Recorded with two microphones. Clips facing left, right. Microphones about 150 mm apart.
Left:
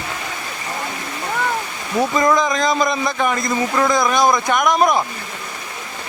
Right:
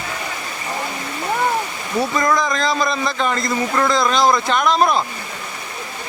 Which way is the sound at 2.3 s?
20° left (ahead or behind).